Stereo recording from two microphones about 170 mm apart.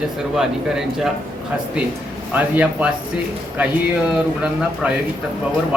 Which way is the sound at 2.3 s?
10° right (ahead or behind).